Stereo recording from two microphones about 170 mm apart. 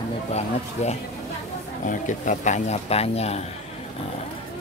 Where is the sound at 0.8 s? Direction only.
40° left (ahead or behind).